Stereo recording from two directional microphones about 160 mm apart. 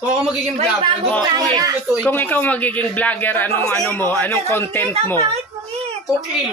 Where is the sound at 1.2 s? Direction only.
25° right (ahead or behind).